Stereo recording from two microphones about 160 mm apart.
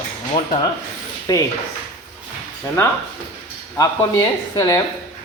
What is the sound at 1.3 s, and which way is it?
Speech, 25° left (ahead or behind).